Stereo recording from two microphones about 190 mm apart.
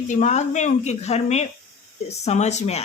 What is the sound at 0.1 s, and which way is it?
Speech, 40° left (ahead or behind).